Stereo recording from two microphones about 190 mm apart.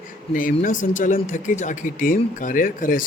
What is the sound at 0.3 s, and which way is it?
Speech, 45° left (ahead or behind).